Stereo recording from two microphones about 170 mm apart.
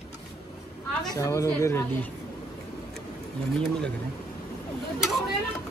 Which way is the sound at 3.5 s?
5° left (ahead or behind).